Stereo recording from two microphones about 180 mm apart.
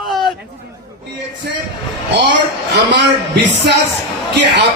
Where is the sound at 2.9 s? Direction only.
75° right (ahead or behind).